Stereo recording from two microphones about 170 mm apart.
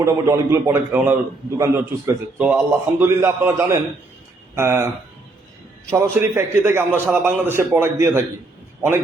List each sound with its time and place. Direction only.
0.0 s a man's voice: 15° right (ahead or behind)
6.0 s a man's voice: 15° right (ahead or behind)